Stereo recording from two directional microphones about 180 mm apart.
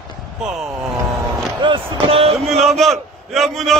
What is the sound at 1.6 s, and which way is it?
Speech, 25° right (ahead or behind).